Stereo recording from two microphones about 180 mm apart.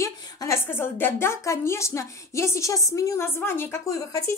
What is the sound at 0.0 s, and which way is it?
A woman's voice, 15° left (ahead or behind).